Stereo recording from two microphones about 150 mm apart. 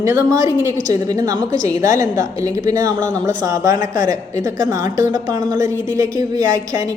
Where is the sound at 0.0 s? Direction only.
25° right (ahead or behind).